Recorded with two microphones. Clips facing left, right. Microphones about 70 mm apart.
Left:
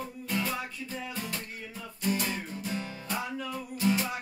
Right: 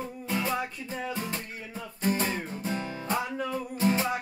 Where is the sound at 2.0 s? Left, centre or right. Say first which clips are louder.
Right 3 dB; right.